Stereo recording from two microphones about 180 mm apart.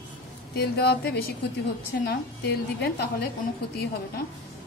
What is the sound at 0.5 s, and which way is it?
A woman's voice, 65° left (ahead or behind).